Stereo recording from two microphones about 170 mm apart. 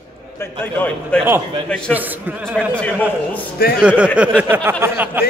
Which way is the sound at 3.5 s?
65° left (ahead or behind).